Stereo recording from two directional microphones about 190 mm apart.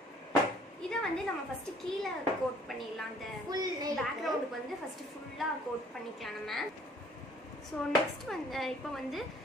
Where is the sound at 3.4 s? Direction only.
20° right (ahead or behind).